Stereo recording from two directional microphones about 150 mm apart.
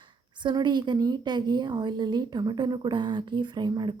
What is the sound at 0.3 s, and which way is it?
A woman's voice, 30° right (ahead or behind).